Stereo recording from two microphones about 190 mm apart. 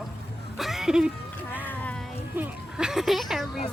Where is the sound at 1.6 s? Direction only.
10° left (ahead or behind).